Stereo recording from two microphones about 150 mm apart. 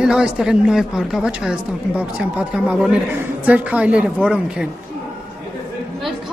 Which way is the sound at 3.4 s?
10° right (ahead or behind).